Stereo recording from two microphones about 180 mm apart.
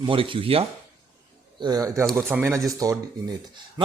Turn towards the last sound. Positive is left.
turn(degrees=-20)  # may be behind; listen again after turning